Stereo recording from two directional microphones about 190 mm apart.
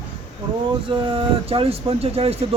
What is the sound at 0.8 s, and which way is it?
Speech, 25° right (ahead or behind).